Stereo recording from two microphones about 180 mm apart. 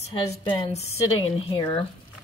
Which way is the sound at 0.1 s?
30° left (ahead or behind).